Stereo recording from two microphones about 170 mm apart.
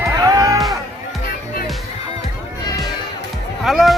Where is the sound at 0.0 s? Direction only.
20° right (ahead or behind).